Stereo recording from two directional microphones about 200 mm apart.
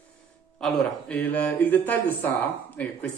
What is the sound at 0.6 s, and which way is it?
A man's voice, 5° left (ahead or behind).